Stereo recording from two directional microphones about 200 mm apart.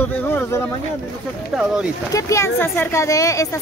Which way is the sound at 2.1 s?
15° left (ahead or behind).